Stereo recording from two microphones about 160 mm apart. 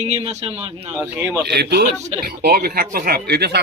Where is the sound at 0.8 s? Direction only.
10° right (ahead or behind).